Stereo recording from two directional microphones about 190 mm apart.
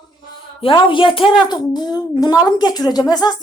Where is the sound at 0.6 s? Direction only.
25° left (ahead or behind).